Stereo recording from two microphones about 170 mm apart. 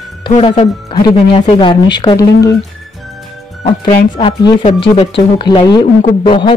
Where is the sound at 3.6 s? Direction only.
30° left (ahead or behind).